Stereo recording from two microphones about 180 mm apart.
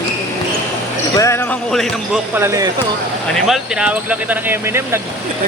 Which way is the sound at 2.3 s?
15° right (ahead or behind).